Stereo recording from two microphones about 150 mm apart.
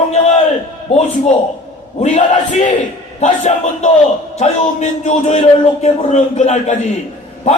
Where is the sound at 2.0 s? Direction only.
50° left (ahead or behind).